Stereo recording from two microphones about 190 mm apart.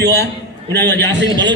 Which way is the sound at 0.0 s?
60° right (ahead or behind).